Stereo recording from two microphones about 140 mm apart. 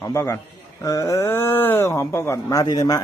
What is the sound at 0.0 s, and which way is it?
Speech, 20° left (ahead or behind).